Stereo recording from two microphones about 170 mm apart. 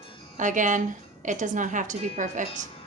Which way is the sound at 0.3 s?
50° right (ahead or behind).